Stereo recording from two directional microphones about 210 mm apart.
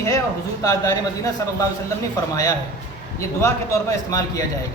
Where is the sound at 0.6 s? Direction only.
15° left (ahead or behind).